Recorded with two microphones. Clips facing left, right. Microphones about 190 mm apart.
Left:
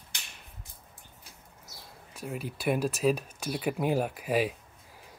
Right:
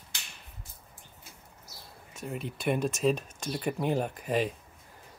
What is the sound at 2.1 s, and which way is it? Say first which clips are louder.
Speech: even; centre (ahead or behind).